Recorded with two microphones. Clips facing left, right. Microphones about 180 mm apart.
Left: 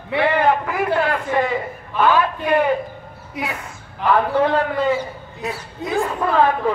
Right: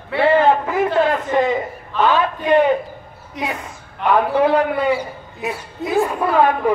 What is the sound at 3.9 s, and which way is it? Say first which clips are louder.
A man's voice: right 1 dB; 5° right (ahead or behind).